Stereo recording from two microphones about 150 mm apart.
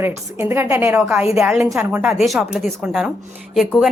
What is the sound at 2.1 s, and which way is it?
Speech, centre (ahead or behind).